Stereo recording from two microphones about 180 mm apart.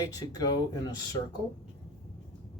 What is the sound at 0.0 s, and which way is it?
Speech, 20° left (ahead or behind).